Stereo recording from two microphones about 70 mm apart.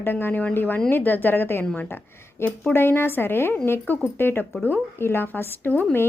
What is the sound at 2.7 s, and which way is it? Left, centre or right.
Speech, left.